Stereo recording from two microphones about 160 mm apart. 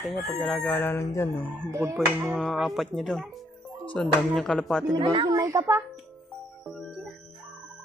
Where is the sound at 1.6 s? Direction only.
15° right (ahead or behind).